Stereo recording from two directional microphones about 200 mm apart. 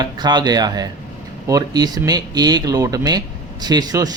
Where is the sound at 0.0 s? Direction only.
20° right (ahead or behind).